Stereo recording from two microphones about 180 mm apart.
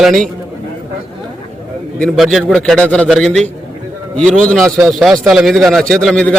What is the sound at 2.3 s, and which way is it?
A man's voice, centre (ahead or behind).